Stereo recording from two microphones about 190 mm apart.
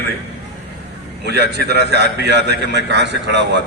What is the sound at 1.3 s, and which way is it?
A man's voice, 60° right (ahead or behind).